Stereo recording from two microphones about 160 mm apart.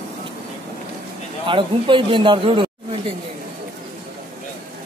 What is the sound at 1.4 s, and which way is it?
A man's voice, 30° right (ahead or behind).